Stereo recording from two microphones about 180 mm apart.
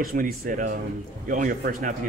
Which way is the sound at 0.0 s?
50° right (ahead or behind).